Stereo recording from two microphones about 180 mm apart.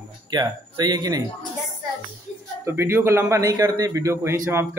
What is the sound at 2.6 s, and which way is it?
A man's voice, 15° right (ahead or behind).